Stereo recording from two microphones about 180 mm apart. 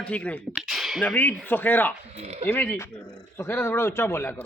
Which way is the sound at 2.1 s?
35° right (ahead or behind).